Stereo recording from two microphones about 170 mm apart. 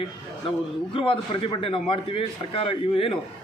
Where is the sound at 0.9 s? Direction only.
30° left (ahead or behind).